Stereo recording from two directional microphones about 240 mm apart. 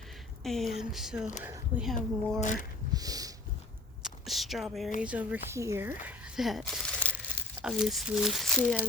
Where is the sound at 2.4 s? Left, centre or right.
Left.